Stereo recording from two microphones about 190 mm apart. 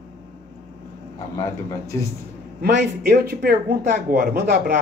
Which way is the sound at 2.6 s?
55° right (ahead or behind).